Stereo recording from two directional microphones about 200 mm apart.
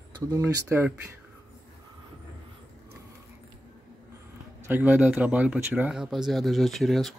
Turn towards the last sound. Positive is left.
turn(degrees=0)  # may be behind; listen again after turning